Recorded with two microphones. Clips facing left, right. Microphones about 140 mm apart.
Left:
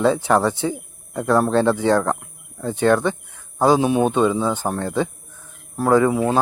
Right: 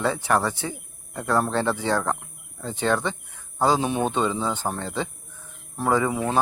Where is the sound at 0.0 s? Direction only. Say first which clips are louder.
Left 6 dB; 15° left (ahead or behind).